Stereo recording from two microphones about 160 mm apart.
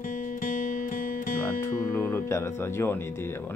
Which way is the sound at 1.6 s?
15° left (ahead or behind).